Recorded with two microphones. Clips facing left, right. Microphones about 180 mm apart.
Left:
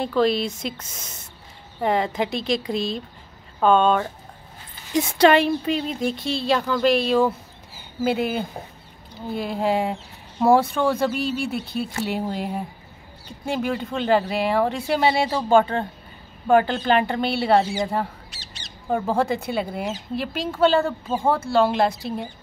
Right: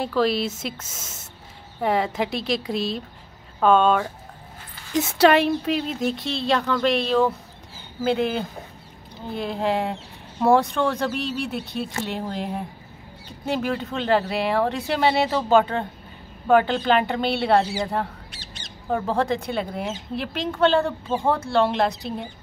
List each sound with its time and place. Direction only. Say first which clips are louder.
0.0 s speech: left 1 dB; 5° right (ahead or behind)
18.3 s squawk: right 2 dB; 50° right (ahead or behind)
18.9 s speech: left 1 dB; 5° left (ahead or behind)